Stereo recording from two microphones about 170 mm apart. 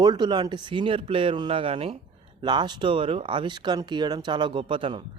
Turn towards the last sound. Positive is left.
turn(degrees=-30)  # may be behind; listen again after turning